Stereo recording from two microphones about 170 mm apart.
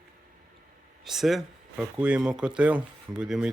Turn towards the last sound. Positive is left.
turn(degrees=-5)  # may be behind; listen again after turning